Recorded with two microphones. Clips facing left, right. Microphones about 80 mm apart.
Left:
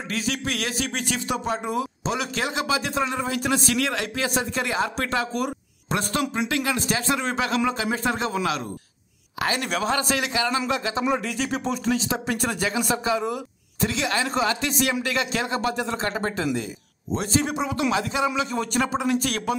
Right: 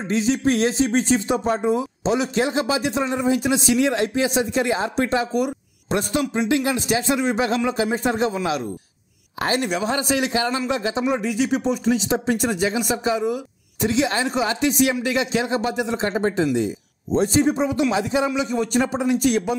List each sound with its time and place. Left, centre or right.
0.1 s speech: right
1.6 s a man's voice: right
9.6 s speech: centre
13.2 s a sound: centre
13.8 s a man's voice: right